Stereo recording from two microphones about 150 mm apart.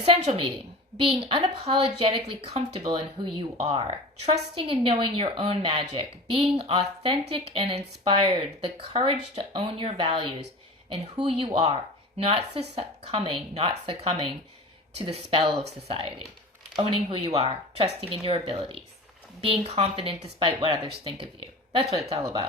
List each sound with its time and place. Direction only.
0.0 s a woman's voice: 35° right (ahead or behind)